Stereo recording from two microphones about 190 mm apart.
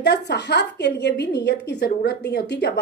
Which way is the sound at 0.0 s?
65° left (ahead or behind).